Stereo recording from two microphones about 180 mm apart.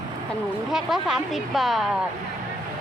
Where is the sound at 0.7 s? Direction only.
Centre (ahead or behind).